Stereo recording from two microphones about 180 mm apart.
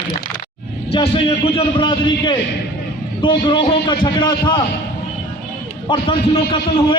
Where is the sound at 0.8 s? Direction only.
35° left (ahead or behind).